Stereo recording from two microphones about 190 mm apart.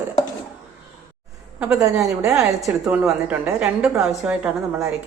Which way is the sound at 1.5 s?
10° right (ahead or behind).